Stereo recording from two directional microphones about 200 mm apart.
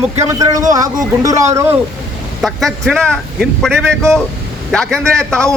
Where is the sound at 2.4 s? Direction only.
Centre (ahead or behind).